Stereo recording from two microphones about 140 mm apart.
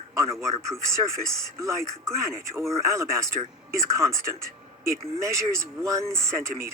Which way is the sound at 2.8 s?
20° right (ahead or behind).